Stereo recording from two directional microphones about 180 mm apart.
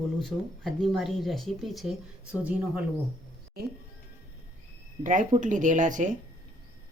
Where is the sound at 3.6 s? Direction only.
60° right (ahead or behind).